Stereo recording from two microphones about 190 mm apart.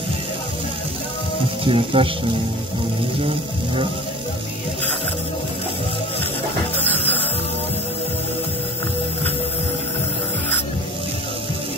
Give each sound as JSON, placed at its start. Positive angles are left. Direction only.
{"t": 1.6, "sound": "speech", "side_deg": -25}